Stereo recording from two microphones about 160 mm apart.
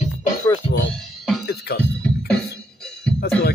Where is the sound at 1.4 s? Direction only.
90° left.